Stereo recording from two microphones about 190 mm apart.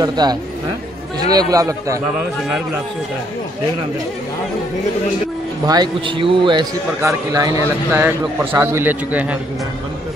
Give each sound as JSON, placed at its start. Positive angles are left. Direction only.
{"t": 0.0, "sound": "a man's voice", "side_deg": -20}
{"t": 5.7, "sound": "a man's voice", "side_deg": -25}